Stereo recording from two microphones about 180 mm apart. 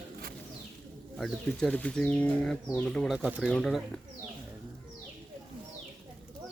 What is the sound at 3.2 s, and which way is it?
Speech, 5° right (ahead or behind).